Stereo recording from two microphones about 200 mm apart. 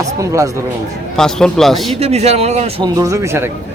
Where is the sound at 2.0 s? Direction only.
30° right (ahead or behind).